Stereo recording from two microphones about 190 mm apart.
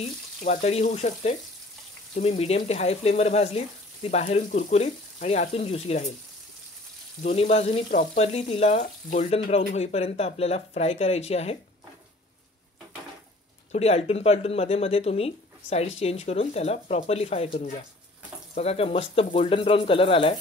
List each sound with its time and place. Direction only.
0.5 s speech: 35° left (ahead or behind)
7.3 s speech: 35° left (ahead or behind)
8.8 s speech: 40° left (ahead or behind)
13.7 s speech: 35° left (ahead or behind)